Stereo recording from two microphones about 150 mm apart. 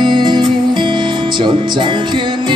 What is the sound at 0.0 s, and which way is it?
Music, 30° right (ahead or behind).